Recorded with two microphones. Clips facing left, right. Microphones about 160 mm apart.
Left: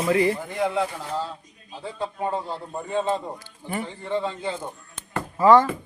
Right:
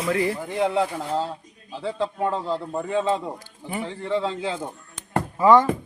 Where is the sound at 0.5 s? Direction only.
30° right (ahead or behind).